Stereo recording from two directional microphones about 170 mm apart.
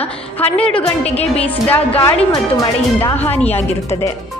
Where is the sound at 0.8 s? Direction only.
35° left (ahead or behind).